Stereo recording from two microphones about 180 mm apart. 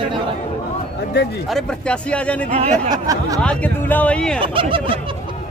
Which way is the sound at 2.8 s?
20° right (ahead or behind).